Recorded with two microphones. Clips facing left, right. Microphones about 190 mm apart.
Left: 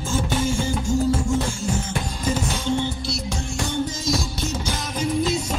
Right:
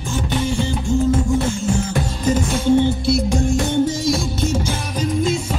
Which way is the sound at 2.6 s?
50° right (ahead or behind).